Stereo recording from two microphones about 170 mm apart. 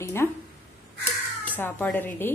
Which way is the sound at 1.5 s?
10° left (ahead or behind).